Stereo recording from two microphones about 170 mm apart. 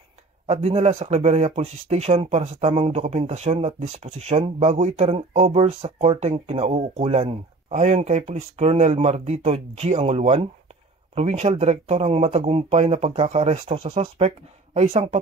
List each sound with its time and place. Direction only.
0.5 s speech: 40° right (ahead or behind)